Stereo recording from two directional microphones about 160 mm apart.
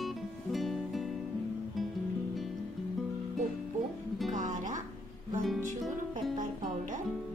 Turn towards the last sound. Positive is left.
turn(degrees=0)  # may be behind; listen again after turning